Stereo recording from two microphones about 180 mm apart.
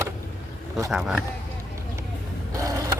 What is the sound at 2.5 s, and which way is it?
Vehicle, 20° right (ahead or behind).